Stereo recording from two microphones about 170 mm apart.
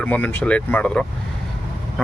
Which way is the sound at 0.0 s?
10° left (ahead or behind).